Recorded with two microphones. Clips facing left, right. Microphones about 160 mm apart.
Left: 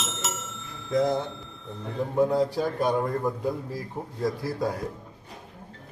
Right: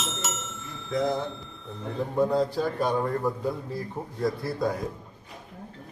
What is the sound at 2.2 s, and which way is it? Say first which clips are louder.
A man's voice: left 1 dB; 10° left (ahead or behind).